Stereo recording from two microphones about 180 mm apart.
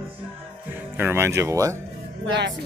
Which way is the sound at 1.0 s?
15° right (ahead or behind).